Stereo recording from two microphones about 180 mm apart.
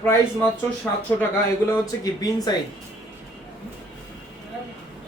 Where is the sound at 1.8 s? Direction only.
20° left (ahead or behind).